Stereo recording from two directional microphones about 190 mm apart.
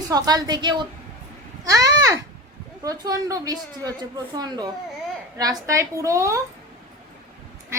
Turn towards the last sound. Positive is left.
turn(degrees=-15)  # may be behind; listen again after turning